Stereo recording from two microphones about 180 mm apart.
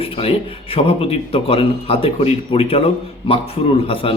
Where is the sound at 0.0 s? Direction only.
30° left (ahead or behind).